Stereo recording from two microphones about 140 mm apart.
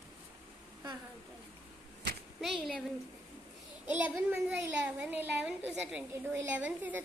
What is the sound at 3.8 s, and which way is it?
A woman's voice, 10° right (ahead or behind).